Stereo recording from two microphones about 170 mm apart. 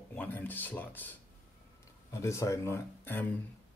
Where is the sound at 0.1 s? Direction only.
10° left (ahead or behind).